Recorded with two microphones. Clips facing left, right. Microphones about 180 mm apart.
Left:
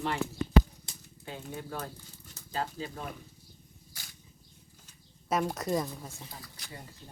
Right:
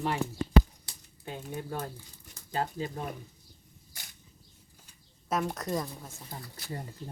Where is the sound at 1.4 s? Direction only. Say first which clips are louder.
Right 3 dB; 10° right (ahead or behind).